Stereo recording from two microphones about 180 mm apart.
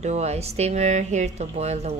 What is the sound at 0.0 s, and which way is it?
Speech, 40° right (ahead or behind).